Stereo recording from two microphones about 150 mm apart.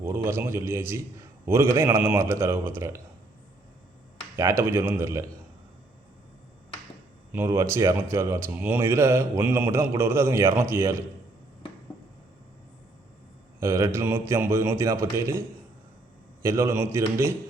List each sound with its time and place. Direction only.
0.0 s a man's voice: 15° right (ahead or behind)
4.4 s a man's voice: 20° right (ahead or behind)
7.3 s a man's voice: 20° right (ahead or behind)
13.6 s a man's voice: 20° right (ahead or behind)